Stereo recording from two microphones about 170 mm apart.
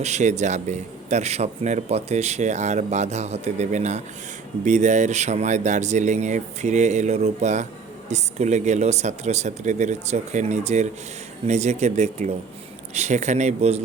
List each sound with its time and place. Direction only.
0.0 s a man's voice: 45° right (ahead or behind)